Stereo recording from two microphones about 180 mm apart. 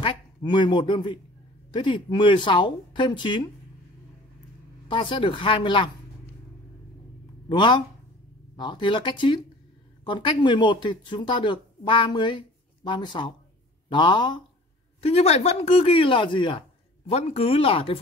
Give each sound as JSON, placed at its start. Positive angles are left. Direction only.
{"t": 0.0, "sound": "speech", "side_deg": 25}
{"t": 4.8, "sound": "speech", "side_deg": 25}
{"t": 7.4, "sound": "speech", "side_deg": 25}